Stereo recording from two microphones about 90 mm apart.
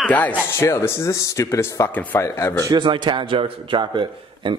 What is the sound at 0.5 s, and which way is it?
Speech, 30° left (ahead or behind).